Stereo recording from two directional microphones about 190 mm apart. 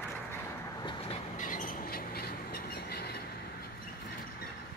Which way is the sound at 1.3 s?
45° left (ahead or behind).